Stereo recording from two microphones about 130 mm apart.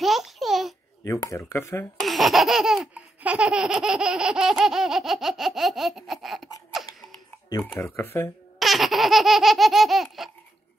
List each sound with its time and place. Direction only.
0.0 s a sound: centre (ahead or behind)
1.0 s speech: 25° left (ahead or behind)
2.0 s laughter: centre (ahead or behind)
6.7 s a sound: centre (ahead or behind)
7.6 s speech: 20° left (ahead or behind)
8.5 s laughter: centre (ahead or behind)